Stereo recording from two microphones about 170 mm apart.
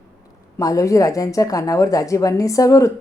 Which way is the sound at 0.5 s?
20° left (ahead or behind).